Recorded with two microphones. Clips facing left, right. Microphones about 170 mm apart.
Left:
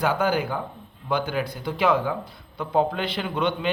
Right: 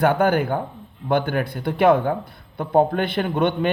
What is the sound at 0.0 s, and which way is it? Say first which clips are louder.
A man's voice: right 5 dB; 55° right (ahead or behind).